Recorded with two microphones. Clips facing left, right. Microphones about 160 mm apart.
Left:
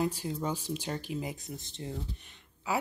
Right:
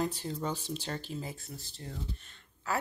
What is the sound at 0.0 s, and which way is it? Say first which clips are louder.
Speech: left 2 dB; 10° left (ahead or behind).